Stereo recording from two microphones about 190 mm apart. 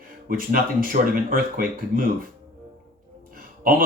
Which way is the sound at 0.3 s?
50° right (ahead or behind).